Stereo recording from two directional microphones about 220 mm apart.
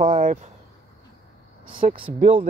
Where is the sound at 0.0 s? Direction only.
35° right (ahead or behind).